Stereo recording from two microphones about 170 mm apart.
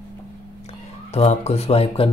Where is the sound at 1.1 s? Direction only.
40° left (ahead or behind).